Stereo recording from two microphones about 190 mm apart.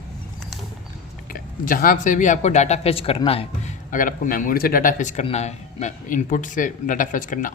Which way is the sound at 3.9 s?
45° left (ahead or behind).